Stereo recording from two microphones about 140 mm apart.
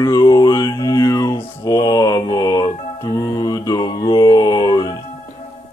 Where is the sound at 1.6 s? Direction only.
25° left (ahead or behind).